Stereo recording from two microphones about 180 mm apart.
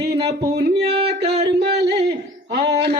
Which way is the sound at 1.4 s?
65° right (ahead or behind).